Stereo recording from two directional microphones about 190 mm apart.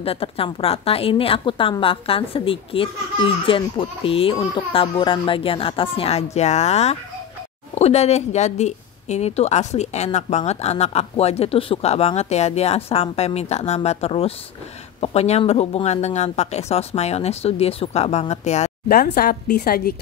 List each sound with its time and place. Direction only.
0.0 s a woman's voice: 30° left (ahead or behind)
18.9 s a woman's voice: 50° left (ahead or behind)